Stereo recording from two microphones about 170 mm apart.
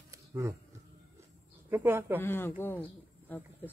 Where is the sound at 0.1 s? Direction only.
20° right (ahead or behind).